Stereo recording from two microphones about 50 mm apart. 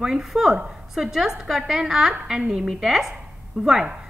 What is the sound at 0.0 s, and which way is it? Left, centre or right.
A woman's voice, centre.